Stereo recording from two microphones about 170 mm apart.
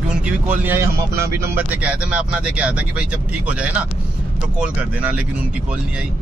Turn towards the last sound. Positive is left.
turn(degrees=-5)  # may be behind; listen again after turning